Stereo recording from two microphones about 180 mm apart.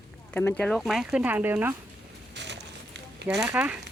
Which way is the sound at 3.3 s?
5° right (ahead or behind).